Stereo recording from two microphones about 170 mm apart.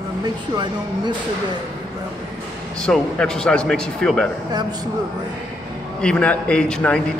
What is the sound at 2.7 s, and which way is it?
A man's voice, 5° left (ahead or behind).